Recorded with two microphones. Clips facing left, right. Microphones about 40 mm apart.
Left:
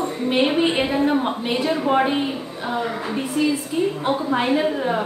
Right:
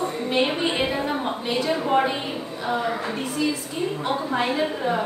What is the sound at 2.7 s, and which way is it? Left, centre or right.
Speech, centre.